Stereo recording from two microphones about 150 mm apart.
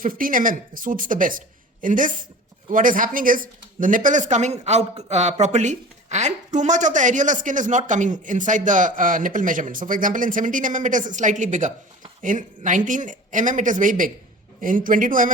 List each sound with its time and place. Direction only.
0.0 s speech: 65° right (ahead or behind)